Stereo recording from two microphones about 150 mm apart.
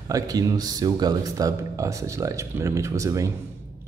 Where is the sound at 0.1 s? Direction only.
25° right (ahead or behind).